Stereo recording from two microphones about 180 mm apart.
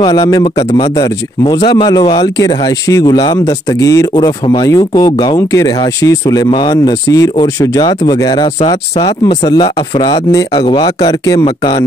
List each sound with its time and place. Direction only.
0.0 s speech: 20° left (ahead or behind)